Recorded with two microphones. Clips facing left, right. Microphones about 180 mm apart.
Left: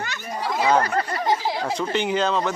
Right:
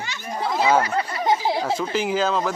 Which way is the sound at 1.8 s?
Centre (ahead or behind).